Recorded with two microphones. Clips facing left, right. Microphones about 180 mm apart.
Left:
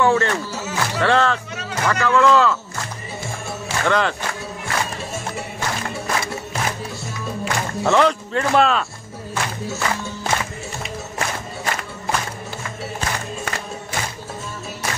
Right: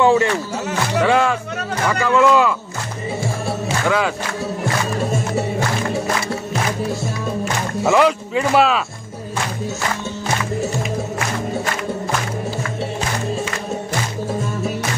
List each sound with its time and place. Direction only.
0.0 s speech: 15° right (ahead or behind)
3.8 s speech: 5° right (ahead or behind)
7.8 s speech: 5° right (ahead or behind)